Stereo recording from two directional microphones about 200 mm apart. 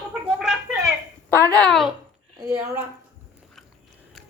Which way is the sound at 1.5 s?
5° left (ahead or behind).